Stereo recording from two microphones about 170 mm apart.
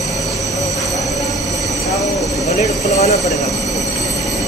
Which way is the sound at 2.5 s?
40° left (ahead or behind).